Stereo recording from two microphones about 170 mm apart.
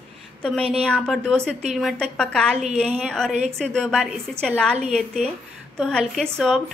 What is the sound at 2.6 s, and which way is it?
Speech, 40° right (ahead or behind).